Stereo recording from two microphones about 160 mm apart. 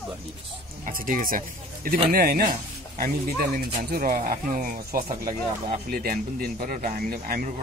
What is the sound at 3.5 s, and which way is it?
Speech, 60° right (ahead or behind).